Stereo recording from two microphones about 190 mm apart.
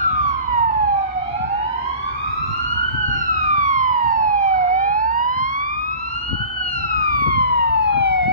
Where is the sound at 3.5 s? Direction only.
45° right (ahead or behind).